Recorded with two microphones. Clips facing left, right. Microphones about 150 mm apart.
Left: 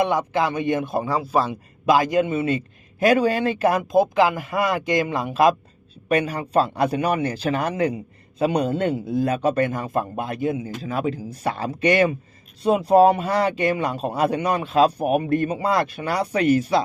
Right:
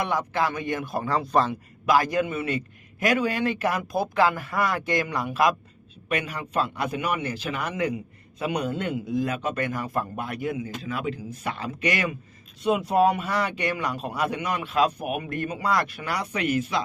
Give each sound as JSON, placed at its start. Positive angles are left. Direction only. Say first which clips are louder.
{"t": 0.0, "sound": "a man's voice", "louder": "left 5 dB", "side_deg": 20}
{"t": 1.0, "sound": "speech", "louder": "left 1 dB", "side_deg": 10}
{"t": 1.9, "sound": "a man's voice", "louder": "left 4 dB", "side_deg": 20}